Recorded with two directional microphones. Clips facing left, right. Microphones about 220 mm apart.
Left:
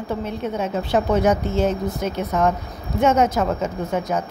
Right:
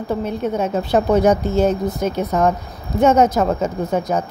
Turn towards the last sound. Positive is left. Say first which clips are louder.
# right 3 dB
turn(degrees=-35)  # may be behind; listen again after turning